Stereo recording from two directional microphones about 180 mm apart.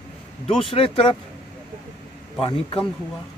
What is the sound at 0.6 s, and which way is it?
Speech, 30° left (ahead or behind).